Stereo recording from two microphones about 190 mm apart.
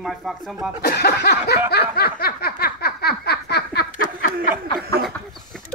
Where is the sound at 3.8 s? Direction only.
40° left (ahead or behind).